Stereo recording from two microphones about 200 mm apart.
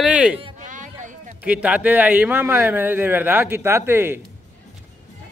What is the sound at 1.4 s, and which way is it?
A man's voice, 5° right (ahead or behind).